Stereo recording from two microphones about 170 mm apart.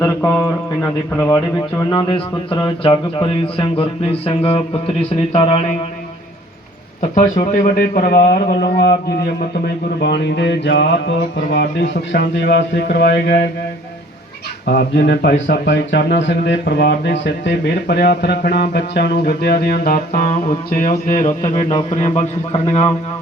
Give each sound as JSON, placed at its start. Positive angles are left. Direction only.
{"t": 0.0, "sound": "speech", "side_deg": 15}
{"t": 1.8, "sound": "speech", "side_deg": 30}
{"t": 7.0, "sound": "a man's voice", "side_deg": 50}
{"t": 10.0, "sound": "a sound", "side_deg": 90}
{"t": 14.7, "sound": "a man's voice", "side_deg": 70}
{"t": 21.4, "sound": "speech", "side_deg": 40}